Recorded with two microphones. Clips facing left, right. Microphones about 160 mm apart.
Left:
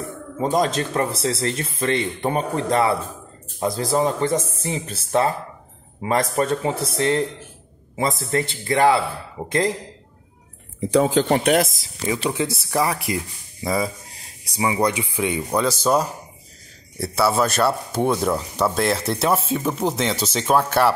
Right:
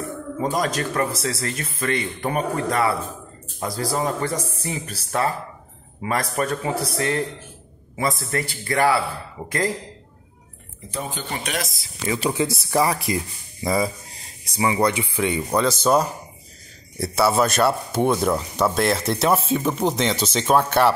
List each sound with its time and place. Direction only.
0.4 s a man's voice: 25° left (ahead or behind)
8.3 s speech: 25° left (ahead or behind)
10.8 s speech: 90° left; by 11.9 s 45° left (ahead or behind)
12.2 s speech: centre (ahead or behind)
14.4 s speech: 10° left (ahead or behind)